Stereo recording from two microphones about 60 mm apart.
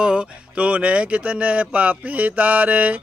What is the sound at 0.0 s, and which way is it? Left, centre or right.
Speech, centre.